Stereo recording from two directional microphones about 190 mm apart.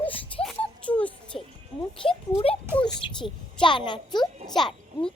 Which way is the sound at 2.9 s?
25° left (ahead or behind).